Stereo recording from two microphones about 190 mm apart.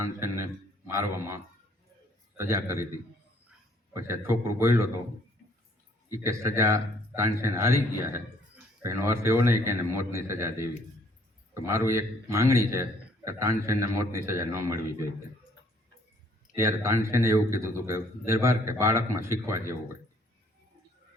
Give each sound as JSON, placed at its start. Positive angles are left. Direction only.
{"t": 0.2, "sound": "a man's voice", "side_deg": -15}
{"t": 2.4, "sound": "a man's voice", "side_deg": -15}
{"t": 3.9, "sound": "a man's voice", "side_deg": -15}
{"t": 6.1, "sound": "a man's voice", "side_deg": -15}
{"t": 16.6, "sound": "a man's voice", "side_deg": -15}